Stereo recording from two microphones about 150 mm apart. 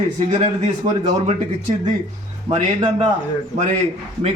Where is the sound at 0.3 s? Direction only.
50° right (ahead or behind).